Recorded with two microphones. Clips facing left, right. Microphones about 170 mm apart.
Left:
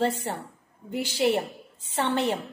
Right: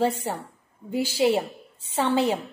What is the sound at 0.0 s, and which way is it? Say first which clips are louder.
A woman's voice: right 2 dB; 10° right (ahead or behind).